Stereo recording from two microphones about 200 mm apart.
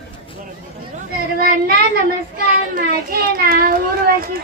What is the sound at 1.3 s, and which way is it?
A child's voice, 50° right (ahead or behind).